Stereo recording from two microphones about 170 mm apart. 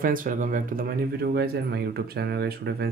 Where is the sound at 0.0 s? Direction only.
55° right (ahead or behind).